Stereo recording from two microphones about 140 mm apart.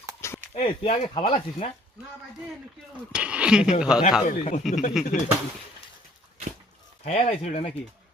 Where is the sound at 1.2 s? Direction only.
40° left (ahead or behind).